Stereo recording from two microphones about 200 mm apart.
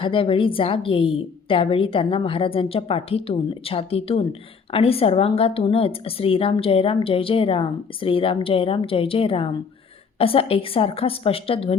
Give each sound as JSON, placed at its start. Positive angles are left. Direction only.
{"t": 0.0, "sound": "a woman's voice", "side_deg": 25}